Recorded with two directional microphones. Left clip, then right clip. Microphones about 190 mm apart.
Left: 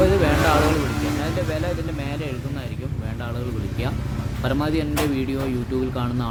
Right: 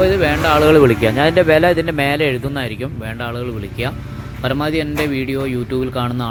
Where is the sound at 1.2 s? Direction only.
40° right (ahead or behind).